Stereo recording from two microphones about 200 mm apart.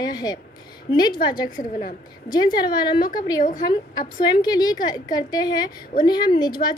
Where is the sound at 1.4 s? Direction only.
40° left (ahead or behind).